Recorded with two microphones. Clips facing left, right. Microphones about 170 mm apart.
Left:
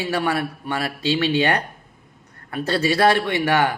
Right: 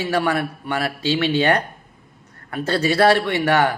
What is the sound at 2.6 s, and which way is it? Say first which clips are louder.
A man's voice: right 2 dB; 15° left (ahead or behind).